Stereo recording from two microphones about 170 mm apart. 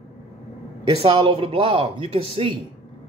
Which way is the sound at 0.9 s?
35° right (ahead or behind).